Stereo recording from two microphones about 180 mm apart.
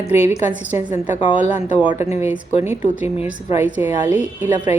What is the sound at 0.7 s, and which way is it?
A woman's voice, 15° right (ahead or behind).